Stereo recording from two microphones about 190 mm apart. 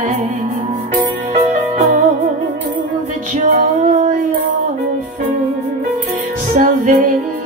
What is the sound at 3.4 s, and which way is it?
Music, 40° right (ahead or behind).